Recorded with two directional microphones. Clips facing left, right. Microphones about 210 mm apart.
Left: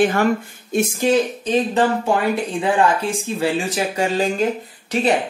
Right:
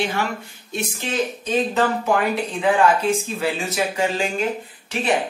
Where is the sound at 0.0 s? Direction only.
50° left (ahead or behind).